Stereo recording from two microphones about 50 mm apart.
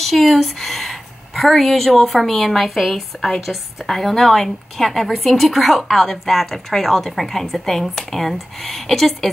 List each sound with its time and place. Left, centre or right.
0.0 s a woman's voice: centre